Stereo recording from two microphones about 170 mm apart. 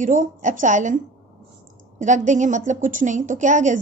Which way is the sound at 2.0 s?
45° right (ahead or behind).